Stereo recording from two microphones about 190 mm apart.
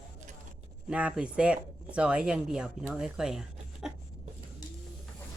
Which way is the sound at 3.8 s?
Centre (ahead or behind).